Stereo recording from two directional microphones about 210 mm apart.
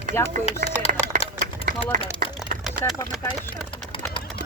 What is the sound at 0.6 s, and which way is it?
Speech, 35° right (ahead or behind).